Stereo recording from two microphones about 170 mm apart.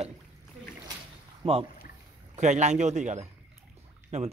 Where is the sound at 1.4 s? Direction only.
35° right (ahead or behind).